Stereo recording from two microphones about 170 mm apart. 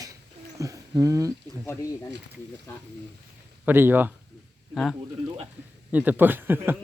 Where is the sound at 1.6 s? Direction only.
15° left (ahead or behind).